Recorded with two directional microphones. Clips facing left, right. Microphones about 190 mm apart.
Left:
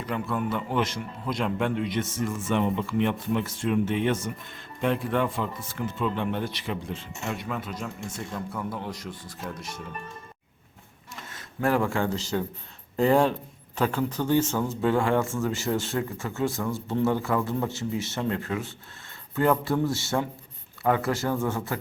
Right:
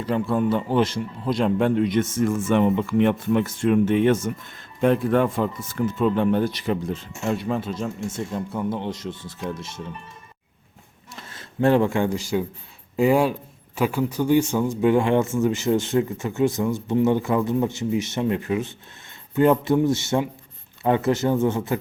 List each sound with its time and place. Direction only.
0.0 s a man's voice: 30° right (ahead or behind)
11.3 s a man's voice: 30° right (ahead or behind)